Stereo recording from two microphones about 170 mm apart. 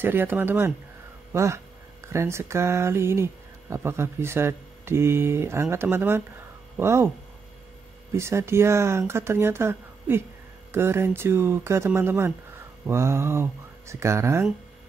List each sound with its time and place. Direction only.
0.0 s speech: 15° right (ahead or behind)
8.2 s speech: 15° right (ahead or behind)